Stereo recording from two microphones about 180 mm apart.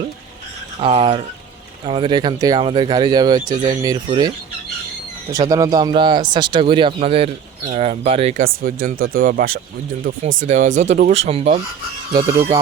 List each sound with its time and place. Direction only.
0.8 s speech: 30° right (ahead or behind)
5.3 s speech: 20° right (ahead or behind); by 8.4 s 35° right (ahead or behind)
8.4 s speech: 50° right (ahead or behind)
10.1 s speech: 90° right
10.4 s speech: 40° right (ahead or behind)